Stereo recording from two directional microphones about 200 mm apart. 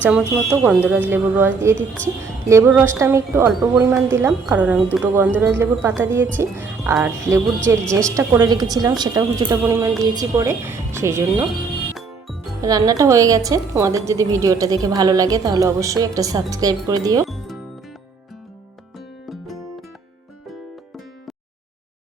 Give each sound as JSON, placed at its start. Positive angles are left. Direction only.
{"t": 0.1, "sound": "a woman's voice", "side_deg": -5}
{"t": 3.6, "sound": "a woman's voice", "side_deg": 0}
{"t": 12.6, "sound": "a woman's voice", "side_deg": -20}
{"t": 17.2, "sound": "music", "side_deg": 0}
{"t": 18.9, "sound": "music", "side_deg": 0}